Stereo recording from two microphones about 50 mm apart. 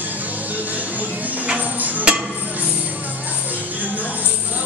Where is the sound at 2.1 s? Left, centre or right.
Centre.